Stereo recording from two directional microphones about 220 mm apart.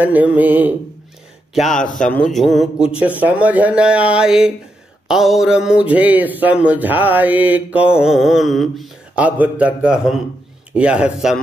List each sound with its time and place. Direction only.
0.0 s mantra: 5° right (ahead or behind)
1.5 s speech: centre (ahead or behind)